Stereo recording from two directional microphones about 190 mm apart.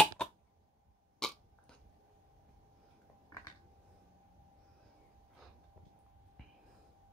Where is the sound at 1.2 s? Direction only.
5° left (ahead or behind).